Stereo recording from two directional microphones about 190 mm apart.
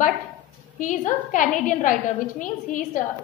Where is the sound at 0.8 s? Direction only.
45° left (ahead or behind).